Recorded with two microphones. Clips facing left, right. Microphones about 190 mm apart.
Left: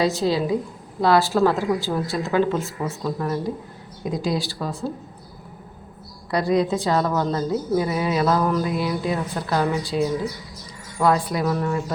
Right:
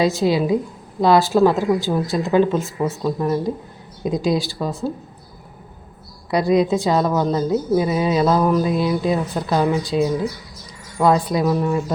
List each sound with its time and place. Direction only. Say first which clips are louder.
0.0 s speech: right 3 dB; 15° right (ahead or behind)
6.3 s speech: right 4 dB; 15° right (ahead or behind)